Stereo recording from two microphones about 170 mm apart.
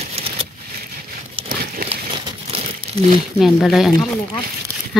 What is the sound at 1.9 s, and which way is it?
Crumpling, 30° right (ahead or behind).